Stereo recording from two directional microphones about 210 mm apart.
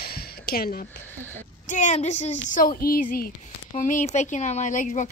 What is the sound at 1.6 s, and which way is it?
A woman's voice, 35° left (ahead or behind).